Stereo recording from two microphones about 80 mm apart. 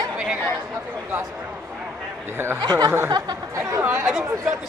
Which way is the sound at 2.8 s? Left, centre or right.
Right.